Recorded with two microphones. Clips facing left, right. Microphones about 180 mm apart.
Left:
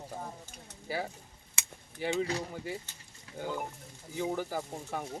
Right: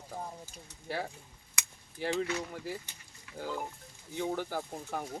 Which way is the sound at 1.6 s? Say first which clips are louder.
Right 1 dB; 25° left (ahead or behind).